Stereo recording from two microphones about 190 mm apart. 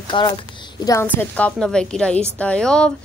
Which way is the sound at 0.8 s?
10° left (ahead or behind).